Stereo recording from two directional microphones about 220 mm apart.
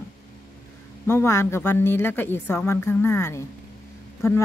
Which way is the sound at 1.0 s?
10° left (ahead or behind).